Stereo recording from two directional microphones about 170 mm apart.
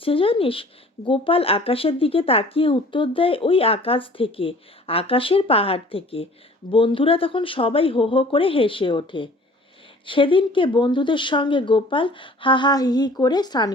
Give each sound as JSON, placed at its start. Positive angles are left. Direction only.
{"t": 0.0, "sound": "speech", "side_deg": 30}